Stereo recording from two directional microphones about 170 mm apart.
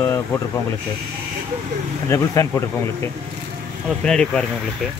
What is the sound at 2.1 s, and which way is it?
Speech, 15° left (ahead or behind).